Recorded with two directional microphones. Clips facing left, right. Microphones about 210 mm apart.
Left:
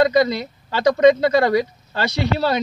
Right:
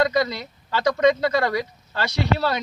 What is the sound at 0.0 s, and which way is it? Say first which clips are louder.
Speech: left 5 dB; 25° left (ahead or behind).